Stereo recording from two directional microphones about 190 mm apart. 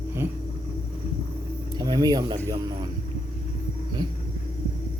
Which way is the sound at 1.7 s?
20° right (ahead or behind).